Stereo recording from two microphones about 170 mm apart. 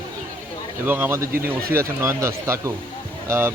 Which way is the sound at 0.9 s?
10° right (ahead or behind).